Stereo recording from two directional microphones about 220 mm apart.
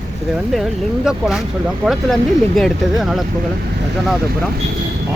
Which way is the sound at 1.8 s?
Centre (ahead or behind).